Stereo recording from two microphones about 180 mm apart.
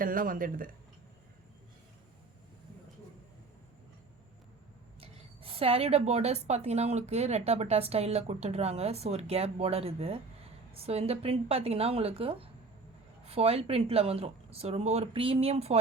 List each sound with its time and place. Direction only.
0.0 s speech: 50° right (ahead or behind)
4.9 s a woman's voice: 30° right (ahead or behind)